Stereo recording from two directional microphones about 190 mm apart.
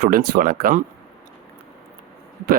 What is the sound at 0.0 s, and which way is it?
Speech, 50° right (ahead or behind).